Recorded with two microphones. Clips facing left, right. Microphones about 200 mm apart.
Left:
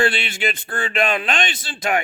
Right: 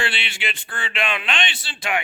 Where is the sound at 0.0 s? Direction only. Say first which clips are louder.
Left 7 dB; 45° left (ahead or behind).